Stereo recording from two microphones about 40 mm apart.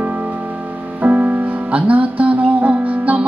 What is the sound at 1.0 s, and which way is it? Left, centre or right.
Music, right.